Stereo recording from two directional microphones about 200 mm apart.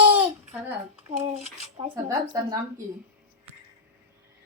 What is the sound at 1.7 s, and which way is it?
Speech, 15° right (ahead or behind).